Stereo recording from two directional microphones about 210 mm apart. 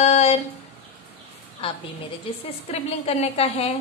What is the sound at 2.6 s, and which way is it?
A woman's voice, 30° left (ahead or behind).